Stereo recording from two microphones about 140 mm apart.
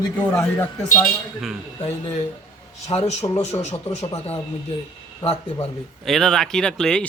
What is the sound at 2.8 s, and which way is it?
Speech, 50° left (ahead or behind).